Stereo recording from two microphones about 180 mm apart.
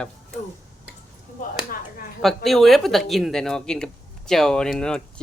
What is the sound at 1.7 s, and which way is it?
Speech, 55° left (ahead or behind).